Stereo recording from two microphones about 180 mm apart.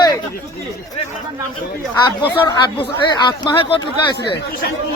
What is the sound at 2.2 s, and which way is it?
Speech, 25° left (ahead or behind).